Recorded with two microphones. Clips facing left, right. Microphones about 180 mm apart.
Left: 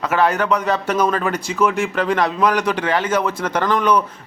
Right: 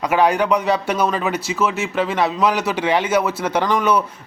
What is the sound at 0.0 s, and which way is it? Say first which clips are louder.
A man's voice: right 1 dB; 10° right (ahead or behind).